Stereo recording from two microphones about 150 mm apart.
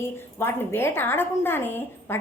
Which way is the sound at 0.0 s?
15° left (ahead or behind).